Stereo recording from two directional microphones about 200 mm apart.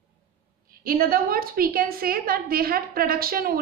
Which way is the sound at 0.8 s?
45° right (ahead or behind).